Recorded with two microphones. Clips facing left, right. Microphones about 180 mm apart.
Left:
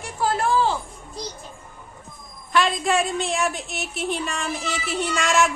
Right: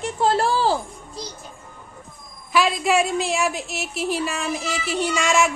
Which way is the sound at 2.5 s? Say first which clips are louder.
Right 2 dB; centre (ahead or behind).